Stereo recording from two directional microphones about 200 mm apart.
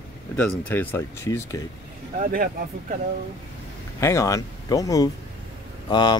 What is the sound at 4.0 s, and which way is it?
Speech, 15° left (ahead or behind).